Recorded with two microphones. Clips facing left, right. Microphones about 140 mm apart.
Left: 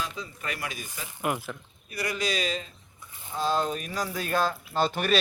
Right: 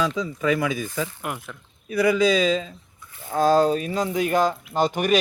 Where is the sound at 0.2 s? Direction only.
90° right.